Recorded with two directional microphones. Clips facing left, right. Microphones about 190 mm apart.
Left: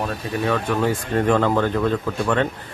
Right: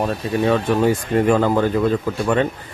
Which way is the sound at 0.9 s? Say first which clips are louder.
Right 2 dB; 10° right (ahead or behind).